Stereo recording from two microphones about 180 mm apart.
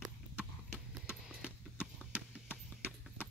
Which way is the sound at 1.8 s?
5° right (ahead or behind).